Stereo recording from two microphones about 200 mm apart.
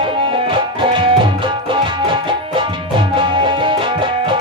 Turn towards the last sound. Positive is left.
turn(degrees=-25)  # may be behind; listen again after turning